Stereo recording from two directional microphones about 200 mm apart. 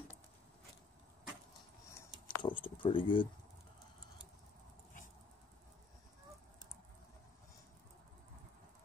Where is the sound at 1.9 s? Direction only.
20° left (ahead or behind).